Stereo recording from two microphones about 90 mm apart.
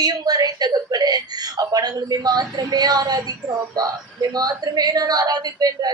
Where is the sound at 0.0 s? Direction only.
50° right (ahead or behind).